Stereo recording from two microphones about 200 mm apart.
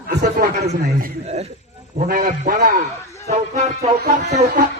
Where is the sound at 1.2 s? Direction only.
35° right (ahead or behind).